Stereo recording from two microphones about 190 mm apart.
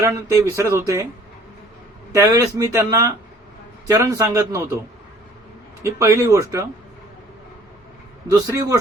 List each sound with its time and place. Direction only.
0.0 s speech: 15° right (ahead or behind)
2.1 s speech: 15° right (ahead or behind)
5.8 s speech: 15° right (ahead or behind)
8.3 s speech: 15° right (ahead or behind)